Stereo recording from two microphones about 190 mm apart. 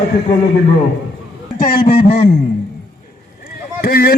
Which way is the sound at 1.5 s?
50° left (ahead or behind).